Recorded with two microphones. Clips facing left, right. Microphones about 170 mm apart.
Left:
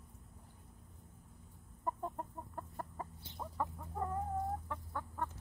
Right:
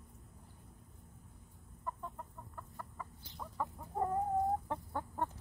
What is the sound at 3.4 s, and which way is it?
Chicken, 20° left (ahead or behind).